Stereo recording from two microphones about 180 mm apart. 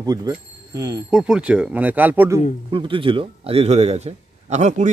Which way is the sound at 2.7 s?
30° right (ahead or behind).